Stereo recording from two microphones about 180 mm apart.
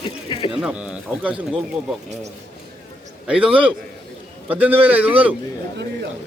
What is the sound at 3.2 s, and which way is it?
Speech, 5° right (ahead or behind).